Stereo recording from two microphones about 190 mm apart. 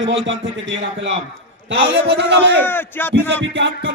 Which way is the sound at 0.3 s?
75° right (ahead or behind).